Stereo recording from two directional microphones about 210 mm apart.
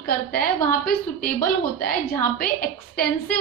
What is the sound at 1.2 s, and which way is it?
Speech, 45° left (ahead or behind).